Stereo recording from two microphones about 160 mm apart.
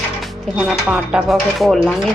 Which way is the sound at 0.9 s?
5° right (ahead or behind).